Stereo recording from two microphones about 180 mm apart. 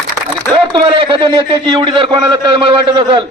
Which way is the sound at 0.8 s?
30° right (ahead or behind).